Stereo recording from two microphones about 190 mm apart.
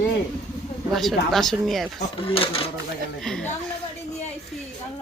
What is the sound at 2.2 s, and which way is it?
Cash register, 30° left (ahead or behind).